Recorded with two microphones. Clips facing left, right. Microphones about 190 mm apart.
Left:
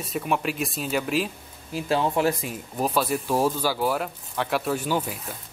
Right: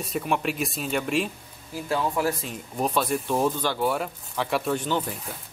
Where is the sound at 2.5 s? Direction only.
5° left (ahead or behind).